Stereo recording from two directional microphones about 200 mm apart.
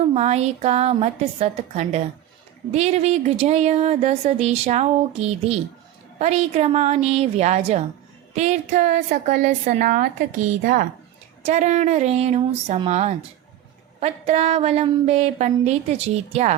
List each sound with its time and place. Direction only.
0.0 s speech: 30° right (ahead or behind)